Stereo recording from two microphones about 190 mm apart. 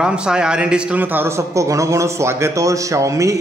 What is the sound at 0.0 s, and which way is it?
A man's voice, 5° right (ahead or behind).